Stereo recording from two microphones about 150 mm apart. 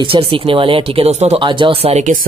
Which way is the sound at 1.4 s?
35° right (ahead or behind).